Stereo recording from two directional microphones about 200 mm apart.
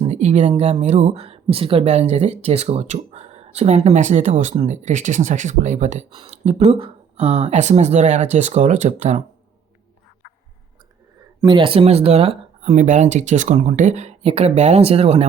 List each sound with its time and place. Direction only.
0.0 s speech: 35° right (ahead or behind)
11.3 s speech: 25° right (ahead or behind)